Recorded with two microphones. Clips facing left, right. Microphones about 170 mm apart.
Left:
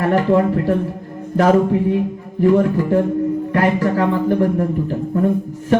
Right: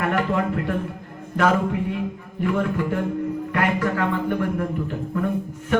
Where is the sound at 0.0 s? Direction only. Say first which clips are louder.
Left 7 dB; 35° left (ahead or behind).